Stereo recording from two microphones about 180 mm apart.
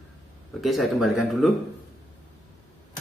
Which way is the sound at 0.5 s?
Centre (ahead or behind).